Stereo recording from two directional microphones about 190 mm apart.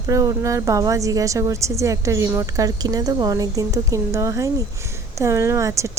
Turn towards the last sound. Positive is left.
turn(degrees=-15)  # may be behind; listen again after turning